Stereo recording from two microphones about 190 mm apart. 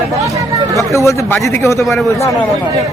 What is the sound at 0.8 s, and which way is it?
A man's voice, 15° left (ahead or behind).